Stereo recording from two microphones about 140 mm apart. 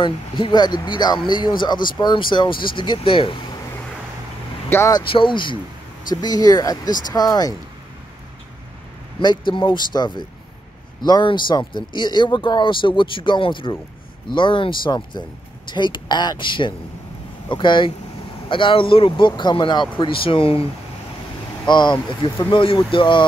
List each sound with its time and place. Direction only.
0.0 s speech: 35° left (ahead or behind)
4.6 s speech: 15° left (ahead or behind)
4.9 s speech: 35° left (ahead or behind)
9.2 s speech: 35° left (ahead or behind)
21.6 s speech: 30° left (ahead or behind)